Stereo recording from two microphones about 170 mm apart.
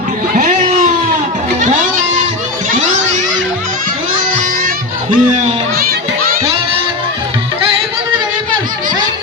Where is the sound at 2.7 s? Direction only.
45° right (ahead or behind).